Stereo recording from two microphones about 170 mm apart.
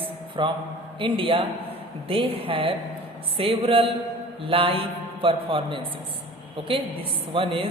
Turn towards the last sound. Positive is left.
turn(degrees=-30)  # may be behind; listen again after turning